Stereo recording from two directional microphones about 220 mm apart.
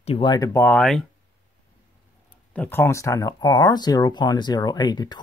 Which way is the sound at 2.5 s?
10° left (ahead or behind).